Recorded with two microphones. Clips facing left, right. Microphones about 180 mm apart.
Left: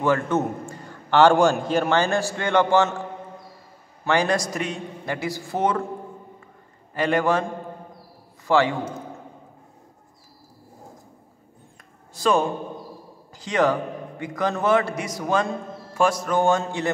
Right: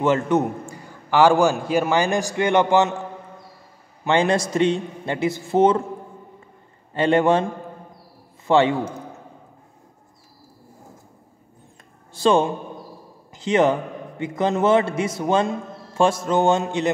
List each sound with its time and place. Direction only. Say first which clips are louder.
0.0 s a man's voice: right 2 dB; 20° right (ahead or behind)
4.0 s a man's voice: right 2 dB; 25° right (ahead or behind)
6.9 s a man's voice: right 4 dB; 25° right (ahead or behind)
8.5 s a man's voice: right 3 dB; 25° right (ahead or behind)
12.1 s a man's voice: right 3 dB; 25° right (ahead or behind)